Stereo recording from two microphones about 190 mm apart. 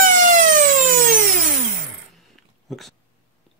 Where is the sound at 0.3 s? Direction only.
45° right (ahead or behind).